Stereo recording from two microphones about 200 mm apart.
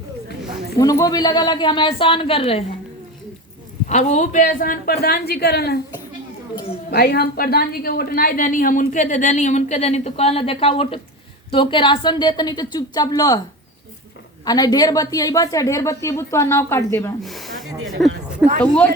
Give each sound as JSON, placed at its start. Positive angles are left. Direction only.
{"t": 0.8, "sound": "a woman's voice", "side_deg": 20}
{"t": 3.8, "sound": "a woman's voice", "side_deg": 35}
{"t": 6.9, "sound": "a woman's voice", "side_deg": 50}
{"t": 14.4, "sound": "a woman's voice", "side_deg": 20}
{"t": 17.2, "sound": "a sound", "side_deg": 0}
{"t": 18.0, "sound": "speech", "side_deg": 0}